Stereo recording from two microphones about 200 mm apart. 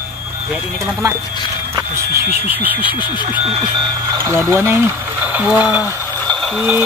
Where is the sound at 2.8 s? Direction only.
25° left (ahead or behind).